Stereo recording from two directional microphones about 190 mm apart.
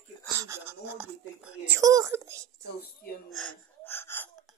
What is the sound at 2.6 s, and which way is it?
Speech, 55° left (ahead or behind).